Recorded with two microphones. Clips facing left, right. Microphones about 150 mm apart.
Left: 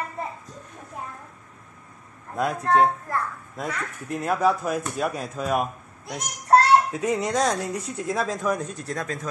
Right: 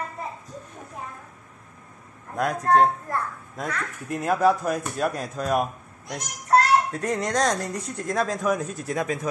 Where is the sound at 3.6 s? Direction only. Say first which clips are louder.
Even; centre (ahead or behind).